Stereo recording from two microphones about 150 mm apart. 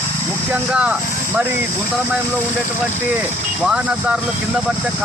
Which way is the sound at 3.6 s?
5° right (ahead or behind).